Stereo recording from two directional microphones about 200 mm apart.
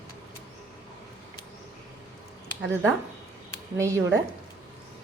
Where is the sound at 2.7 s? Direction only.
10° right (ahead or behind).